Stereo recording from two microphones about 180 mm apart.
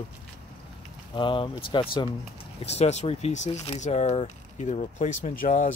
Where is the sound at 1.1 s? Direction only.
25° left (ahead or behind).